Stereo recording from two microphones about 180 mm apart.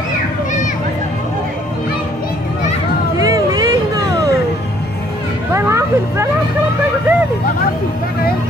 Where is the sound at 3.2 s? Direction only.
20° right (ahead or behind).